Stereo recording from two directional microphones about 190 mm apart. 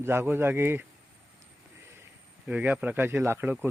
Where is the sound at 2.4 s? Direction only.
5° right (ahead or behind).